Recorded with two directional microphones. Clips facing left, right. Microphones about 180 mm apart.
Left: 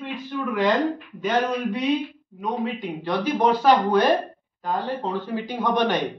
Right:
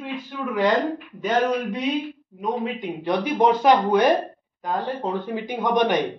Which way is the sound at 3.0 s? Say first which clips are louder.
Right 2 dB; 15° right (ahead or behind).